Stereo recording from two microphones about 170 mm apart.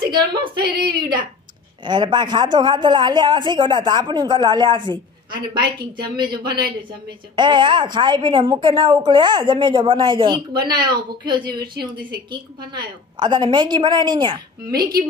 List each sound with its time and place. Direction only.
0.3 s a man's voice: 25° right (ahead or behind)